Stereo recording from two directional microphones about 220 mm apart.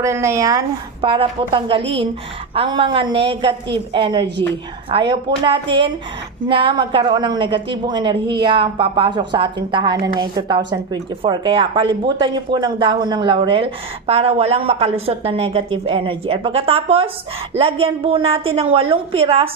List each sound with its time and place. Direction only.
0.0 s a woman's voice: 10° right (ahead or behind)